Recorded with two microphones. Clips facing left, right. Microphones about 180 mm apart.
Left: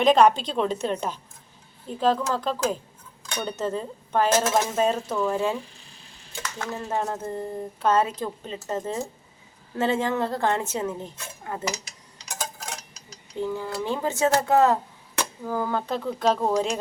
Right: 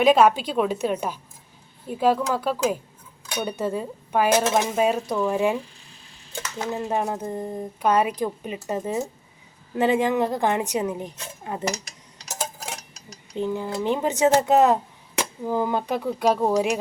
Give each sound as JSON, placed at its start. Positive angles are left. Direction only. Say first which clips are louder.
{"t": 0.0, "sound": "speech", "louder": "right 1 dB", "side_deg": -10}
{"t": 6.6, "sound": "speech", "louder": "right 3 dB", "side_deg": -20}
{"t": 13.3, "sound": "speech", "louder": "right 2 dB", "side_deg": -20}